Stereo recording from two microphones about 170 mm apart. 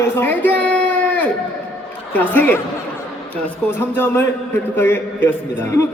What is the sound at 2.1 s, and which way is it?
Speech, 10° left (ahead or behind).